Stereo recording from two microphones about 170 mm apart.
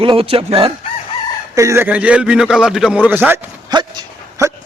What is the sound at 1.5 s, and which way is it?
A man's voice, 15° right (ahead or behind).